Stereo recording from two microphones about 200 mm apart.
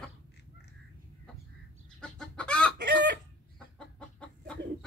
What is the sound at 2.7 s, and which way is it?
Chicken, 60° right (ahead or behind).